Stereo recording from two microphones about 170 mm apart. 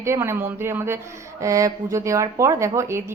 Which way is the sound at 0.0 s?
15° right (ahead or behind).